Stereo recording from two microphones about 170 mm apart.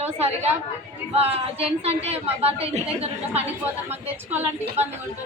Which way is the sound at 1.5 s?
35° right (ahead or behind).